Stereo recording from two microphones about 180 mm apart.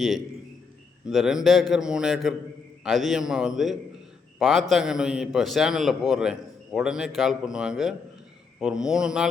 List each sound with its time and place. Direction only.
1.0 s a man's voice: 5° right (ahead or behind)